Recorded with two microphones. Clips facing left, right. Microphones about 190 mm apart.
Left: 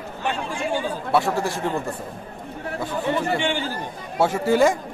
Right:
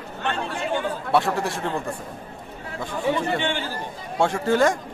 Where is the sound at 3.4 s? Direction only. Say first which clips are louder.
Left 2 dB; 15° left (ahead or behind).